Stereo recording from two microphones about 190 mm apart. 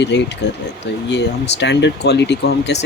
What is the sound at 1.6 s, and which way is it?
Speech, 65° left (ahead or behind).